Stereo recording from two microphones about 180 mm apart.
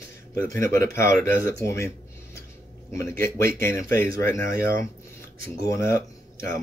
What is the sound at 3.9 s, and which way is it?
Speech, 55° right (ahead or behind).